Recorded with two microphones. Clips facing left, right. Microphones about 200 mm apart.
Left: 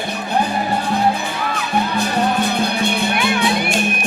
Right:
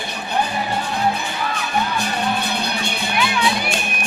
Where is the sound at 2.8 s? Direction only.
55° left (ahead or behind).